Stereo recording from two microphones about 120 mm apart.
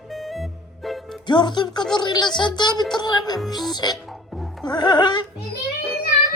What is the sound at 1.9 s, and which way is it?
A woman's voice, 35° left (ahead or behind).